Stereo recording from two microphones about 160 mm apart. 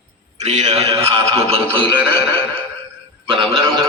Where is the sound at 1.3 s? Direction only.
40° right (ahead or behind).